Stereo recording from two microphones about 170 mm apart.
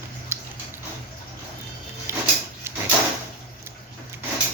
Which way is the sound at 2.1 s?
15° right (ahead or behind).